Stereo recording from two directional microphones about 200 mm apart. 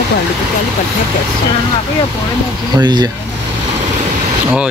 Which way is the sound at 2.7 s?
20° right (ahead or behind).